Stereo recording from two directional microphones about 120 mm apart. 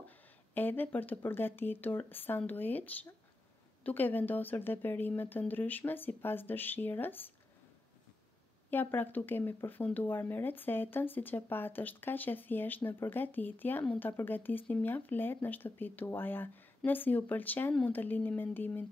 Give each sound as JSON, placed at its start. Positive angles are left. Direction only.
{"t": 0.6, "sound": "speech", "side_deg": 15}
{"t": 8.6, "sound": "speech", "side_deg": 15}